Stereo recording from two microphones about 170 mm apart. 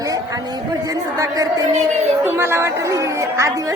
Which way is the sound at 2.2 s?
15° right (ahead or behind).